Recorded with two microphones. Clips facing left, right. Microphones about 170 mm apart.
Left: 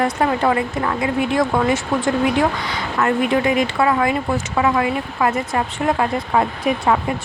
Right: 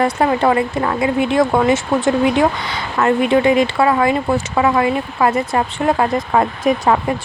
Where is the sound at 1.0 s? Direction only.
25° right (ahead or behind).